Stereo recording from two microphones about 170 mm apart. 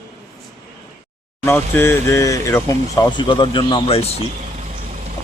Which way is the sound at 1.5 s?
15° left (ahead or behind).